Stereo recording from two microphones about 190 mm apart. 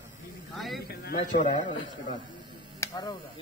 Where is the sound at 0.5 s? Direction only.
Centre (ahead or behind).